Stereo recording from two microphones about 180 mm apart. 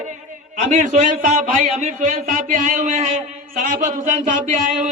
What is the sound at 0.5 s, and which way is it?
A man's voice, 40° right (ahead or behind).